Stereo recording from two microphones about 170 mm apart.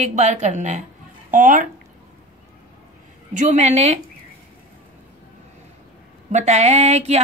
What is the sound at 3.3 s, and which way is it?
Speech, 45° right (ahead or behind).